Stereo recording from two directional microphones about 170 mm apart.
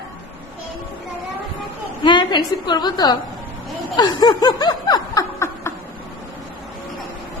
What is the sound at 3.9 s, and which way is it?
Snicker, 25° left (ahead or behind).